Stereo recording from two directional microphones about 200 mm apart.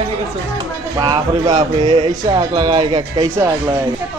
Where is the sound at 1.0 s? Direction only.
20° right (ahead or behind).